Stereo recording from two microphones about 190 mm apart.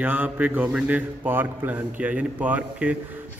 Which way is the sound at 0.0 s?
10° right (ahead or behind).